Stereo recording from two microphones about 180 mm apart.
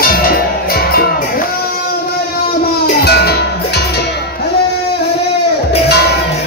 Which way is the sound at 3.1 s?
65° left (ahead or behind).